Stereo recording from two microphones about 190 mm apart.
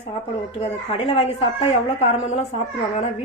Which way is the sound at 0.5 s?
30° left (ahead or behind).